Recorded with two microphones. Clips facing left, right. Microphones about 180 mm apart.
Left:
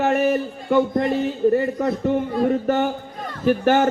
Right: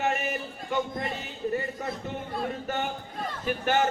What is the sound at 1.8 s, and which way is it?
Speech, 55° left (ahead or behind).